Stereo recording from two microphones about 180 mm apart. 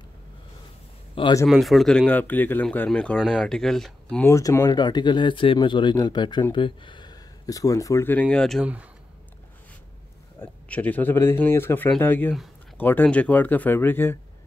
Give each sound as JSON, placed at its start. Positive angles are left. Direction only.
{"t": 1.1, "sound": "speech", "side_deg": 25}
{"t": 1.5, "sound": "a man's voice", "side_deg": 0}
{"t": 10.4, "sound": "a man's voice", "side_deg": 10}